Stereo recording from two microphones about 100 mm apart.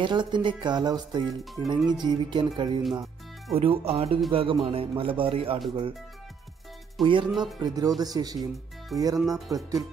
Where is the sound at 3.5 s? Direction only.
70° right (ahead or behind).